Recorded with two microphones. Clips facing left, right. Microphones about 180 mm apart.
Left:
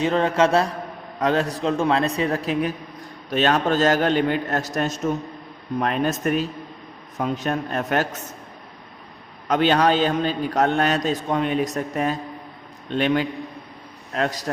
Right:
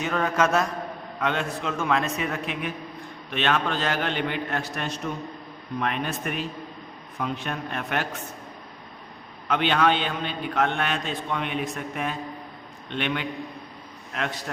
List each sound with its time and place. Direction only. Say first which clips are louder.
0.0 s a man's voice: left 5 dB; 30° left (ahead or behind)
9.5 s a man's voice: left 4 dB; 40° left (ahead or behind)